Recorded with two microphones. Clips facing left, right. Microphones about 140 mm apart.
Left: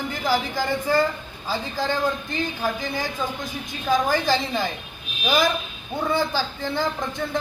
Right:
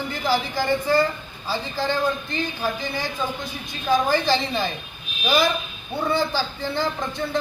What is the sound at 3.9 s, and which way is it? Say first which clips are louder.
Speech: right 1 dB; 15° left (ahead or behind).